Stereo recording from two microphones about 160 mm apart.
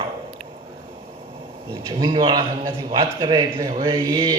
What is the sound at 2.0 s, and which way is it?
A man's voice, 25° right (ahead or behind).